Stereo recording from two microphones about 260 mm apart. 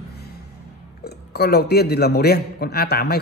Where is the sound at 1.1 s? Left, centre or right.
Left.